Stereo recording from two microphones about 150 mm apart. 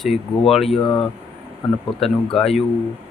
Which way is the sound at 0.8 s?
35° left (ahead or behind).